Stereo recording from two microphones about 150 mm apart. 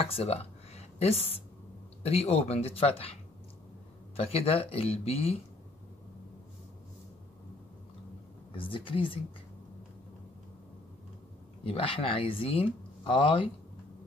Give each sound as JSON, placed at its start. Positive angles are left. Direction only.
{"t": 0.0, "sound": "speech", "side_deg": 40}
{"t": 4.2, "sound": "speech", "side_deg": 40}
{"t": 8.5, "sound": "speech", "side_deg": 35}
{"t": 11.6, "sound": "speech", "side_deg": 40}